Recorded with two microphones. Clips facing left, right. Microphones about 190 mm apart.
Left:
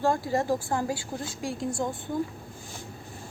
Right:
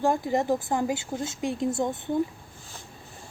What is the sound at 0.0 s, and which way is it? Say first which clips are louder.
Speech: right 1 dB; 20° right (ahead or behind).